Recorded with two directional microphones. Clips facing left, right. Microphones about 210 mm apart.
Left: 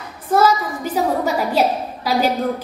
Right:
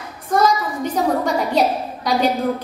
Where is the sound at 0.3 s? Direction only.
5° left (ahead or behind).